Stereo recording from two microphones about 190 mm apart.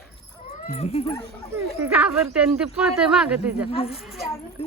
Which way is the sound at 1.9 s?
5° right (ahead or behind).